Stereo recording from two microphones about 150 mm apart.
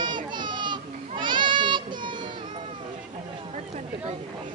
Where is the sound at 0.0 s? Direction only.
30° right (ahead or behind).